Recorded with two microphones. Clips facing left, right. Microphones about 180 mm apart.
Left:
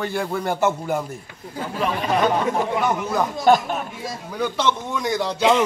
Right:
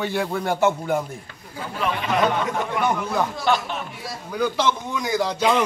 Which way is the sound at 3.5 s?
45° left (ahead or behind).